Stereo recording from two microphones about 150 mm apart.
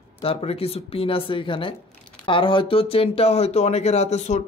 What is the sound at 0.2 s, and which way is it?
Speech, 40° left (ahead or behind).